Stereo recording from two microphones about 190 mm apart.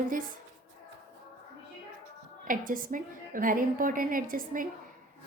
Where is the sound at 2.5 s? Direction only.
45° right (ahead or behind).